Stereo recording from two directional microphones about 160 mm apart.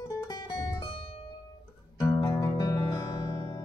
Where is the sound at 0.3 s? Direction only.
20° left (ahead or behind).